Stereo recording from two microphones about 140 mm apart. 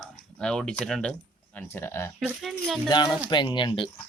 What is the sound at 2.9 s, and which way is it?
Speech, 30° left (ahead or behind).